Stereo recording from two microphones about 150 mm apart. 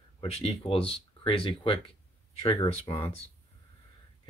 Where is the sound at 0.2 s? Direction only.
40° left (ahead or behind).